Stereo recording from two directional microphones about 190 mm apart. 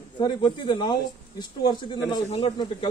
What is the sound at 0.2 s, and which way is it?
Speech, 25° left (ahead or behind).